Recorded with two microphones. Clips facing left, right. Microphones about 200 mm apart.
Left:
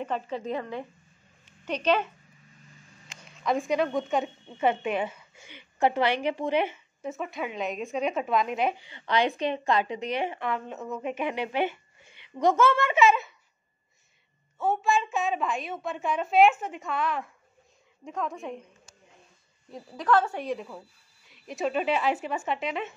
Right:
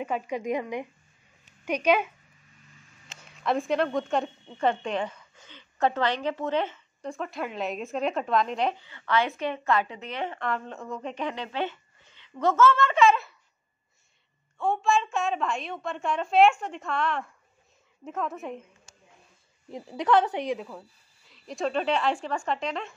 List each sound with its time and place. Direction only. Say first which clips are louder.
0.0 s speech: right 1 dB; 10° right (ahead or behind)
3.2 s a woman's voice: even; centre (ahead or behind)
14.6 s a woman's voice: right 1 dB; 5° left (ahead or behind)
19.7 s a woman's voice: right 1 dB; 20° right (ahead or behind)
20.5 s a woman's voice: right 1 dB; centre (ahead or behind)